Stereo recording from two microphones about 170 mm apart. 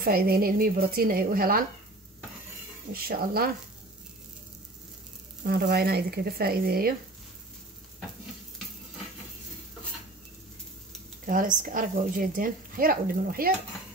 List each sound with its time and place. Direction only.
0.0 s a woman's voice: 60° right (ahead or behind)
2.9 s a woman's voice: 60° right (ahead or behind)
5.4 s a woman's voice: 65° right (ahead or behind)
11.2 s speech: 50° right (ahead or behind)